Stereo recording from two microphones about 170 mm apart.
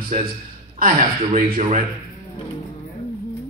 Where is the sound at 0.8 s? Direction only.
45° right (ahead or behind).